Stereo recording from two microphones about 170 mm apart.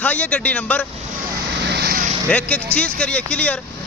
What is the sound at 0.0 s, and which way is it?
Speech, 10° left (ahead or behind).